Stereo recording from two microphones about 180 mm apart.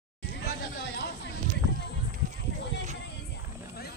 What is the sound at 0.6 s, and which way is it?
Chatter, 70° left (ahead or behind).